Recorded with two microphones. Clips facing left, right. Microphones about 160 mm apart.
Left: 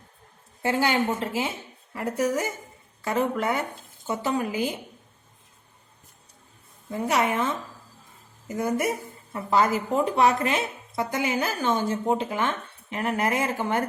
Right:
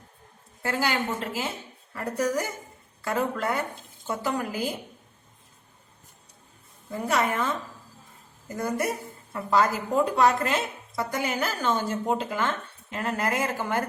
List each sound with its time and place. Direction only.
0.6 s speech: 20° left (ahead or behind)
6.9 s speech: 15° left (ahead or behind)